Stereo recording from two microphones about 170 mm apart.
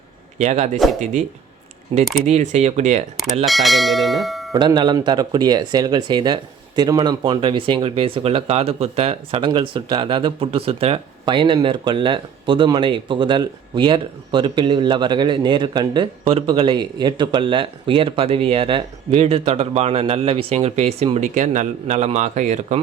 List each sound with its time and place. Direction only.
0.3 s speech: 40° right (ahead or behind)
1.9 s speech: 30° right (ahead or behind)
2.2 s speech: 40° right (ahead or behind)
3.4 s speech: centre (ahead or behind)
4.5 s speech: 25° right (ahead or behind); by 22.8 s 45° right (ahead or behind)